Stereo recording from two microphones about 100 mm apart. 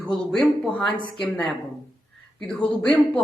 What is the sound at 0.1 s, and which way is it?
A woman's voice, 10° left (ahead or behind).